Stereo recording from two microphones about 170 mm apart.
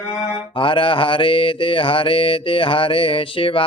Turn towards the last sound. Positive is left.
turn(degrees=30)  # may be behind; listen again after turning